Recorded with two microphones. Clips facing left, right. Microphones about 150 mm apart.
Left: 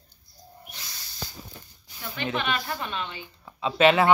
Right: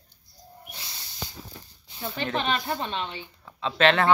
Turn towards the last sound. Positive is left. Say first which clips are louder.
# left 2 dB
turn(degrees=10)  # may be behind; listen again after turning